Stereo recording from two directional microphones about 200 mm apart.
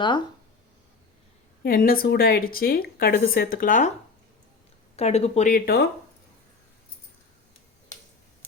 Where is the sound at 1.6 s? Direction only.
45° left (ahead or behind).